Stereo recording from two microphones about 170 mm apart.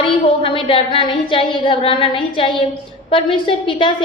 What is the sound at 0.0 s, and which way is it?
A woman's voice, 30° left (ahead or behind).